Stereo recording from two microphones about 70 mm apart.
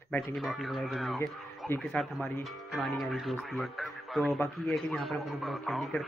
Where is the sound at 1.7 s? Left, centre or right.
Left.